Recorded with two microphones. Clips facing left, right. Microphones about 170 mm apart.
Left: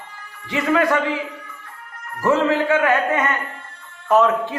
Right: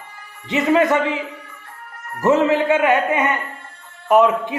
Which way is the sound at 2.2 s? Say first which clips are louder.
Right 2 dB; 20° right (ahead or behind).